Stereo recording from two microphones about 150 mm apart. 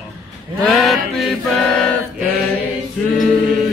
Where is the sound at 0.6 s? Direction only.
Centre (ahead or behind).